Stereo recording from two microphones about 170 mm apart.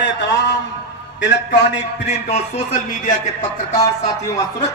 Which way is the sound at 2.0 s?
40° left (ahead or behind).